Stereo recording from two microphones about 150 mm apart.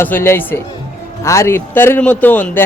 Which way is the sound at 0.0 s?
15° left (ahead or behind).